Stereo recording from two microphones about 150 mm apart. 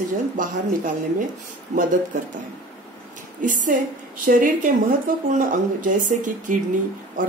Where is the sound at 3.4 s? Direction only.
60° right (ahead or behind).